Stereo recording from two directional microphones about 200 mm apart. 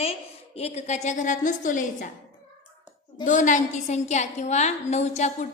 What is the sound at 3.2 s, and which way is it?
A woman's voice, 40° left (ahead or behind).